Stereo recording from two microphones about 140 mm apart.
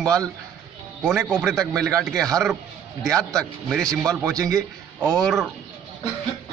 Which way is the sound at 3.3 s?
5° left (ahead or behind).